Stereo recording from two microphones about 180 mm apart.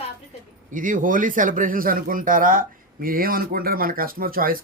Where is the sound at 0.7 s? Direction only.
45° right (ahead or behind).